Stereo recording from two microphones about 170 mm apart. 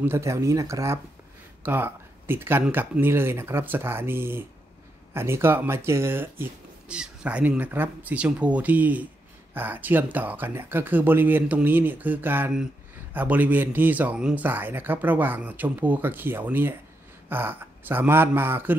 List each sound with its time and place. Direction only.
0.0 s speech: 15° right (ahead or behind)